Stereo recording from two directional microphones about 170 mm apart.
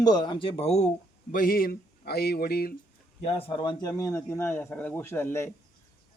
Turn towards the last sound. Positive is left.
turn(degrees=15)  # may be behind; listen again after turning